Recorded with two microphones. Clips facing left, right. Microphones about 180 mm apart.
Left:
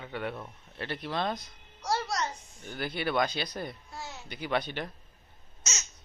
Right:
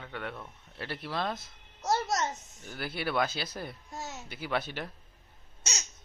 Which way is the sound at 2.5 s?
Centre (ahead or behind).